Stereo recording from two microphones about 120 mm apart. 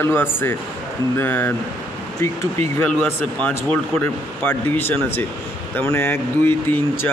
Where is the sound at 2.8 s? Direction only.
10° left (ahead or behind).